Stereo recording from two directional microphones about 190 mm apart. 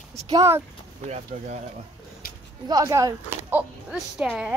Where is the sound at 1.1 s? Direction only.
40° right (ahead or behind).